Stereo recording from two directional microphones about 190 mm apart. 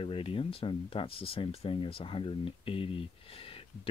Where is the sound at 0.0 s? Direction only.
30° left (ahead or behind).